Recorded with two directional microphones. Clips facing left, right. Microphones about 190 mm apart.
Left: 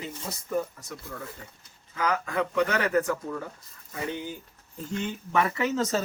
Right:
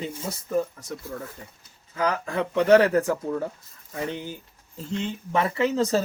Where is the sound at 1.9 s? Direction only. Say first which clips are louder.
Right 2 dB; 35° right (ahead or behind).